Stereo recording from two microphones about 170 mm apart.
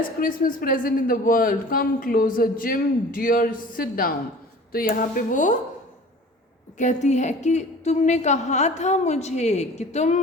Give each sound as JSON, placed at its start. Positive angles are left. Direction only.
{"t": 0.2, "sound": "a woman's voice", "side_deg": 55}
{"t": 6.7, "sound": "a woman's voice", "side_deg": 45}